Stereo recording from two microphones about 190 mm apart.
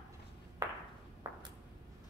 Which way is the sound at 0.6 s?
15° right (ahead or behind).